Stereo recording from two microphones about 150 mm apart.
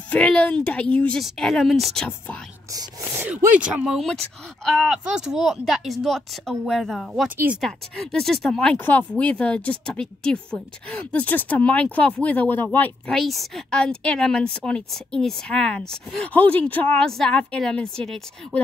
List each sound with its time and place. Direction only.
0.1 s a woman's voice: 10° left (ahead or behind)
2.7 s speech: 20° right (ahead or behind)
3.3 s a woman's voice: 10° right (ahead or behind); by 13.1 s 10° left (ahead or behind)
13.1 s a woman's voice: centre (ahead or behind)